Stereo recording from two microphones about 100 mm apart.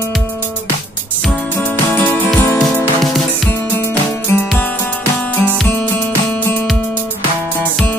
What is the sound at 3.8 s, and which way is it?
Music, 25° left (ahead or behind).